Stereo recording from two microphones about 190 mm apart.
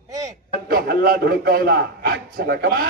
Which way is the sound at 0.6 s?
55° right (ahead or behind).